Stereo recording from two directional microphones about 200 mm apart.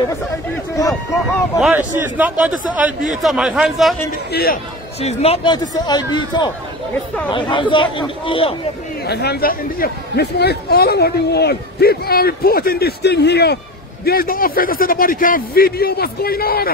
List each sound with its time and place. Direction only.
1.6 s a man's voice: 10° right (ahead or behind)
4.3 s speech: 50° left (ahead or behind)
5.0 s a man's voice: 30° left (ahead or behind)
9.0 s speech: 55° left (ahead or behind)